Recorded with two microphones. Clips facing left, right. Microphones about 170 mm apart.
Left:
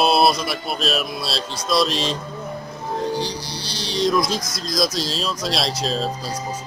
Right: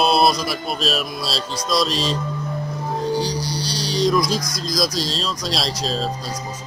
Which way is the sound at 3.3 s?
25° left (ahead or behind).